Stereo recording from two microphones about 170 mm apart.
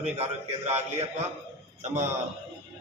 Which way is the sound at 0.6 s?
40° right (ahead or behind).